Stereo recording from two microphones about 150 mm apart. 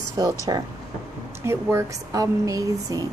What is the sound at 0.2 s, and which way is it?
Speech, 25° right (ahead or behind).